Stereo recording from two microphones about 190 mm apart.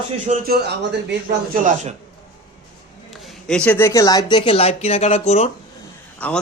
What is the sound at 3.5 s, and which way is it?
Speech, 5° left (ahead or behind).